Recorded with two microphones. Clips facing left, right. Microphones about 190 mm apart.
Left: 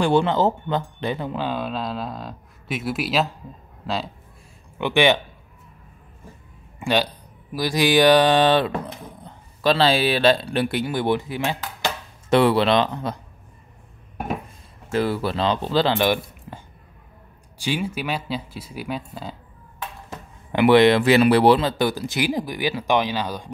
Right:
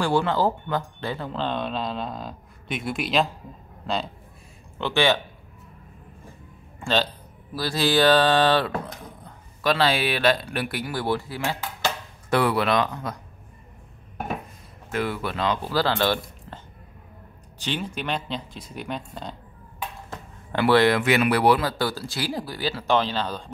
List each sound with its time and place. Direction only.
0.0 s speech: 20° left (ahead or behind); by 4.1 s centre (ahead or behind)
4.7 s speech: 15° left (ahead or behind)
6.8 s speech: 15° left (ahead or behind); by 13.2 s 30° left (ahead or behind)
14.9 s speech: 30° left (ahead or behind); by 19.3 s 5° left (ahead or behind)
20.1 s a sound: 20° left (ahead or behind)
21.0 s speech: 30° left (ahead or behind); by 23.5 s 10° left (ahead or behind)